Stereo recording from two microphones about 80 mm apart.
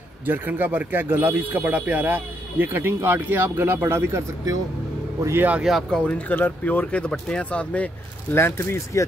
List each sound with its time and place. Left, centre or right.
0.2 s speech: right
5.6 s speech: centre
5.9 s speech: centre
8.4 s speech: left